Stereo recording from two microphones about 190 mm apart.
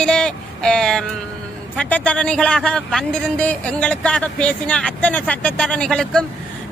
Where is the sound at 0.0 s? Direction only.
5° left (ahead or behind).